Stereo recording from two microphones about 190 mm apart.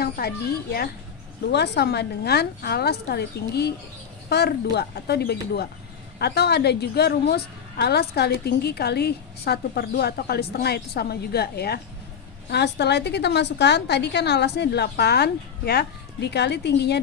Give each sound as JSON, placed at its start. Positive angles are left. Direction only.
{"t": 0.0, "sound": "a woman's voice", "side_deg": 55}